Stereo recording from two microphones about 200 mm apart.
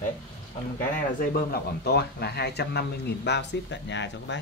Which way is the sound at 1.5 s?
55° left (ahead or behind).